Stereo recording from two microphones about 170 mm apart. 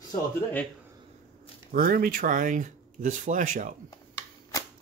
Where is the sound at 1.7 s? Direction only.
55° right (ahead or behind).